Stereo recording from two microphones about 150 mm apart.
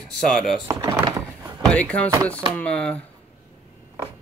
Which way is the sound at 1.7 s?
10° left (ahead or behind).